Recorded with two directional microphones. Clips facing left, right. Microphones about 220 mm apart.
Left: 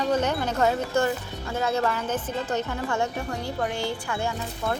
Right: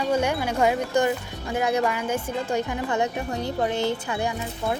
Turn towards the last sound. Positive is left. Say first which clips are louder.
# right 1 dB
turn(degrees=-15)  # may be behind; listen again after turning